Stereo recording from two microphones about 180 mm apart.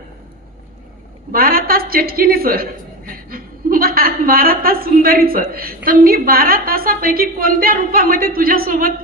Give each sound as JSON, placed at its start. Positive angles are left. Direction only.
{"t": 1.3, "sound": "a woman's voice", "side_deg": -55}